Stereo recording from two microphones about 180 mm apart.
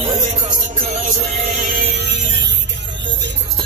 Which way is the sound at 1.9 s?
75° right (ahead or behind).